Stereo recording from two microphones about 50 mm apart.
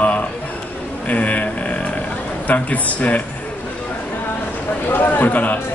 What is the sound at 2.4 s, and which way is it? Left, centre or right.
Speech, left.